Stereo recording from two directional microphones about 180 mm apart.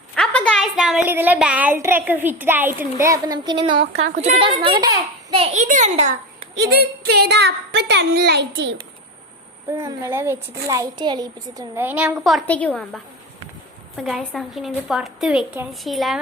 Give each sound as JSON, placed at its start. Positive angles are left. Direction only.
{"t": 0.2, "sound": "a woman's voice", "side_deg": 5}
{"t": 5.3, "sound": "a child's voice", "side_deg": -35}
{"t": 6.6, "sound": "a woman's voice", "side_deg": -65}
{"t": 9.6, "sound": "a woman's voice", "side_deg": -15}